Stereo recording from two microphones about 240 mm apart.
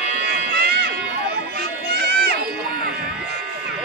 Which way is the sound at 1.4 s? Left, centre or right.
Right.